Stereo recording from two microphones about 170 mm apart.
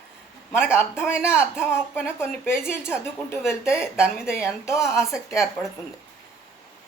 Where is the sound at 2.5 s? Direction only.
15° left (ahead or behind).